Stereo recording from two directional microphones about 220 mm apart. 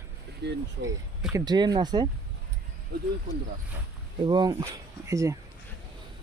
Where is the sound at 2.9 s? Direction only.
45° right (ahead or behind).